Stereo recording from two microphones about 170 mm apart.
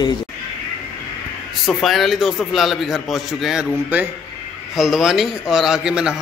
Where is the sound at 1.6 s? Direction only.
Centre (ahead or behind).